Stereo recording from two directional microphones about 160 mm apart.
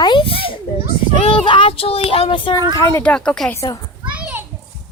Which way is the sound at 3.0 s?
5° left (ahead or behind).